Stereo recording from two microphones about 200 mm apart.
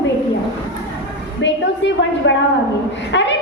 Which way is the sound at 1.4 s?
65° left (ahead or behind).